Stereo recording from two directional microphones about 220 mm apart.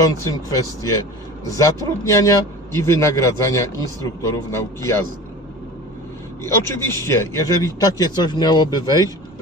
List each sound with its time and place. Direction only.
0.2 s a man's voice: 15° left (ahead or behind)
6.4 s a man's voice: 10° left (ahead or behind)